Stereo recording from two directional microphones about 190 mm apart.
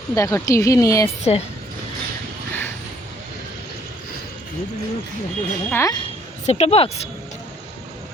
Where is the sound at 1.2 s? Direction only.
35° left (ahead or behind).